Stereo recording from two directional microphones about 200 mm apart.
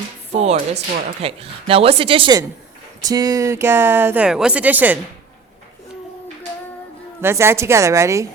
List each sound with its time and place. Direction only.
0.3 s a woman's voice: 30° right (ahead or behind); by 4.9 s 10° right (ahead or behind)
7.2 s speech: 10° right (ahead or behind)